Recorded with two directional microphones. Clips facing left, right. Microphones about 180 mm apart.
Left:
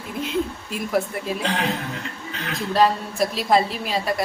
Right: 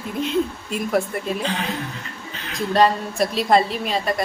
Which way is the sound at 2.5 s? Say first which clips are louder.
Right 2 dB; centre (ahead or behind).